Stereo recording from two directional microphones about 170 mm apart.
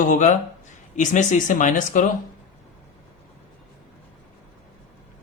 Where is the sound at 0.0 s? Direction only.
45° left (ahead or behind).